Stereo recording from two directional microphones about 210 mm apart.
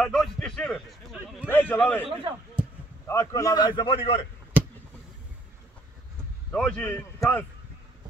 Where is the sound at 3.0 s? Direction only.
15° left (ahead or behind).